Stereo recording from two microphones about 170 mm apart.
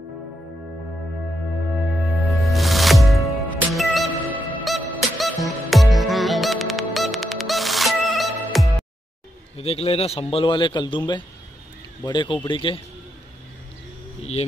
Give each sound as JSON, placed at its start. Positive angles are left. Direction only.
{"t": 2.0, "sound": "music", "side_deg": -5}
{"t": 9.6, "sound": "a man's voice", "side_deg": 35}